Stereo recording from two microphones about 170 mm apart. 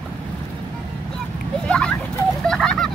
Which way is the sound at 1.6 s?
5° left (ahead or behind).